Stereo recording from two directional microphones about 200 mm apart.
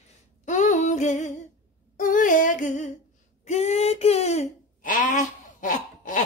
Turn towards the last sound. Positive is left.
turn(degrees=40)  # may be behind; listen again after turning